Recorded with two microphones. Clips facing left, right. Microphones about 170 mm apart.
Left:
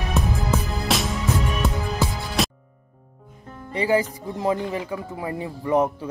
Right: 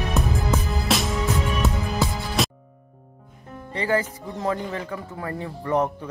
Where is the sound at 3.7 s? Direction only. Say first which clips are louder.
Left 3 dB; 10° left (ahead or behind).